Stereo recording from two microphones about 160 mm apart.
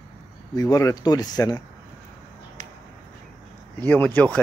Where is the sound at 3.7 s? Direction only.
10° left (ahead or behind).